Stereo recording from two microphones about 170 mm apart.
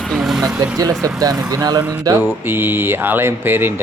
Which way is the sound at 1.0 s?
20° right (ahead or behind).